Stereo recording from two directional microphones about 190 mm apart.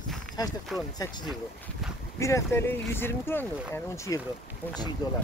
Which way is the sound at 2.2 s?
15° left (ahead or behind).